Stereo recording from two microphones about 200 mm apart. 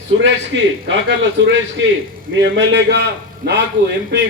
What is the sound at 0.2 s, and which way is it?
Speech, 65° right (ahead or behind).